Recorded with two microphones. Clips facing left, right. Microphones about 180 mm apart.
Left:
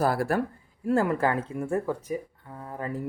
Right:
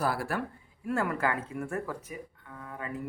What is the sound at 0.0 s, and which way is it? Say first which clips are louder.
Speech: left 6 dB; 45° left (ahead or behind).